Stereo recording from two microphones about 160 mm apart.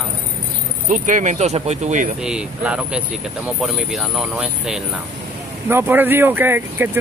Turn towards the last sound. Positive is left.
turn(degrees=-10)  # may be behind; listen again after turning